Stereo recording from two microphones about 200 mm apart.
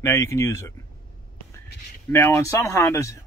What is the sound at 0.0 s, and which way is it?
Speech, 15° left (ahead or behind).